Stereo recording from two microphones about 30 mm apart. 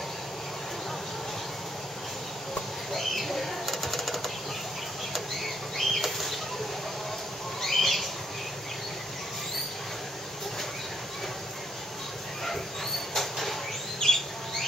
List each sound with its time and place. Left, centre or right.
2.9 s bird flight: centre
7.6 s bird: centre
13.1 s a sound: centre
14.0 s bird: left